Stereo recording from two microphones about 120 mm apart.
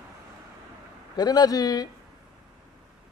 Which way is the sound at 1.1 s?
35° left (ahead or behind).